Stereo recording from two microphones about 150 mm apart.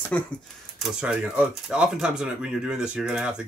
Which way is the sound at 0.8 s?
5° right (ahead or behind).